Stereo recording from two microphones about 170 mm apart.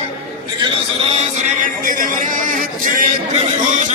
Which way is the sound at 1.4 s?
50° right (ahead or behind).